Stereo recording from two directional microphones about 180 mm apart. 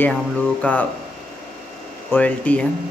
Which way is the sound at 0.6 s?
10° left (ahead or behind).